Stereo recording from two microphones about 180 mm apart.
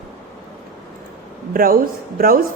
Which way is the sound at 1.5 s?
55° right (ahead or behind).